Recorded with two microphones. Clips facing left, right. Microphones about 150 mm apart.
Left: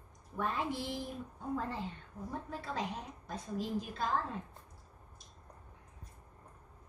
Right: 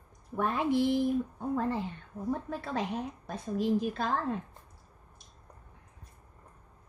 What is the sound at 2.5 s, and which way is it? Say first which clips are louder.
A woman's voice: right 5 dB; 65° right (ahead or behind).